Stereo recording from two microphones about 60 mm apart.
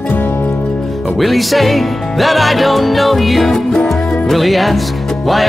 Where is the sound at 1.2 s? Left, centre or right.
Centre.